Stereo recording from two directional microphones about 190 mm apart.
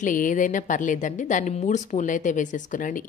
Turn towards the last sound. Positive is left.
turn(degrees=45)  # may be behind; listen again after turning